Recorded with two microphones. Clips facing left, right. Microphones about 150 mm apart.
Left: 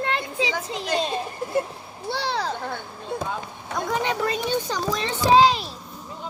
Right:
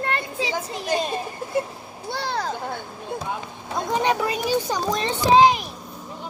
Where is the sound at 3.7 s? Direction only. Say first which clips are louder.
Right 3 dB; 20° right (ahead or behind).